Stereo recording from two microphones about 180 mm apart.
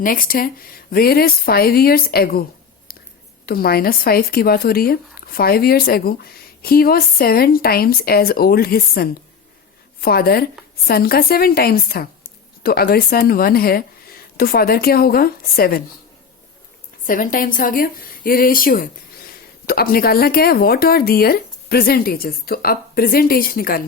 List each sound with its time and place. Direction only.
0.0 s speech: 50° left (ahead or behind)
3.4 s speech: 55° left (ahead or behind)
17.1 s a woman's voice: 50° left (ahead or behind)